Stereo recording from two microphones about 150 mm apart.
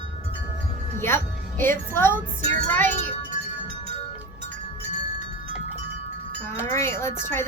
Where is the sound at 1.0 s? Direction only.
15° left (ahead or behind).